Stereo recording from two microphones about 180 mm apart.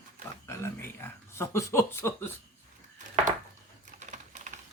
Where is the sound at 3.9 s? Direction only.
40° right (ahead or behind).